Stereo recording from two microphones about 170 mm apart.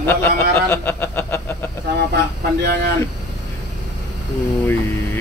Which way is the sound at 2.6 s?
75° right (ahead or behind).